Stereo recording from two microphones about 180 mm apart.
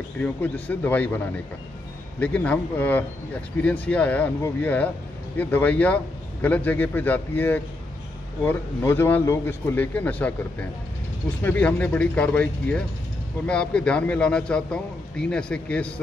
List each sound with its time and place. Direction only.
0.2 s a man's voice: 10° left (ahead or behind)